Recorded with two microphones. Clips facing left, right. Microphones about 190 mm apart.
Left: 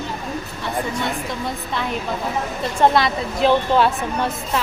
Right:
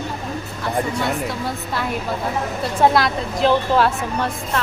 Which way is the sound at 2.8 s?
5° right (ahead or behind).